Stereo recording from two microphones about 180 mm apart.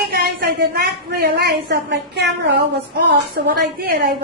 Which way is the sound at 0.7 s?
60° right (ahead or behind).